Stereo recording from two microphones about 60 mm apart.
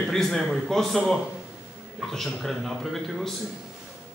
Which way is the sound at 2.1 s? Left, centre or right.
Centre.